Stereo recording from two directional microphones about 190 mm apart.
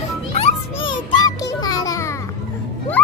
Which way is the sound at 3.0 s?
10° left (ahead or behind).